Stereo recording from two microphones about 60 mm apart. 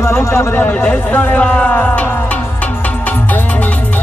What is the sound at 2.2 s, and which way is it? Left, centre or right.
Music, left.